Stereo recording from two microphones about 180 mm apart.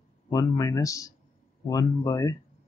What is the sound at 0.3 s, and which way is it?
Speech, 20° left (ahead or behind).